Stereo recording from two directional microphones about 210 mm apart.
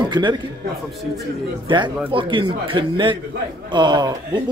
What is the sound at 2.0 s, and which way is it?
A man's voice, 25° right (ahead or behind).